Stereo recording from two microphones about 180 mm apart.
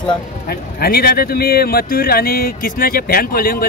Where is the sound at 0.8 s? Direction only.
60° left (ahead or behind).